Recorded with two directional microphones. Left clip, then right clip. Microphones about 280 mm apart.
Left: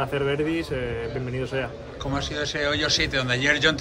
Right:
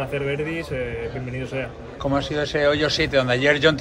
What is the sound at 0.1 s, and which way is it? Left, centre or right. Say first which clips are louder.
Speech: left 1 dB; centre.